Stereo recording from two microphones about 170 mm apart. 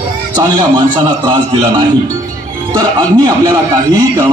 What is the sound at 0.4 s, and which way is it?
A man's voice, 25° right (ahead or behind).